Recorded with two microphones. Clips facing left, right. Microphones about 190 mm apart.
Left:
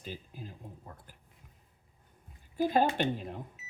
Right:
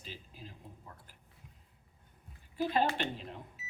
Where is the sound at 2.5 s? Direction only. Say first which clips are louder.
Left 4 dB; 45° left (ahead or behind).